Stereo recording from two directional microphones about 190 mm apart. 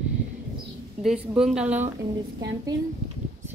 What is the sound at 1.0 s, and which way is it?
Speech, 5° right (ahead or behind).